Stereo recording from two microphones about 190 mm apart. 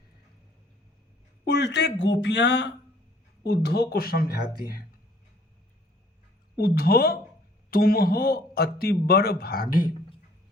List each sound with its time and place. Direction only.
1.5 s speech: 60° left (ahead or behind)
3.4 s a man's voice: 55° left (ahead or behind)
6.6 s a man's voice: 55° left (ahead or behind)